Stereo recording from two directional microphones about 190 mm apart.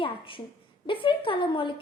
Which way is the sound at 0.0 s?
30° left (ahead or behind).